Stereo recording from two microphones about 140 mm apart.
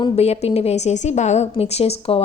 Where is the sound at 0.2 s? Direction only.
50° left (ahead or behind).